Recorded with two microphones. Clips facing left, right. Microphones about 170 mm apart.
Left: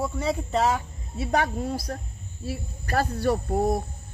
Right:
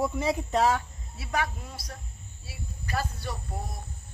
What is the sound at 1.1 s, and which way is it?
Speech, 30° left (ahead or behind).